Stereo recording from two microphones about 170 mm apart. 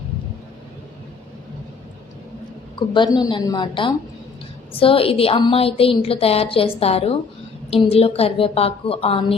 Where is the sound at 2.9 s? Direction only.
25° left (ahead or behind).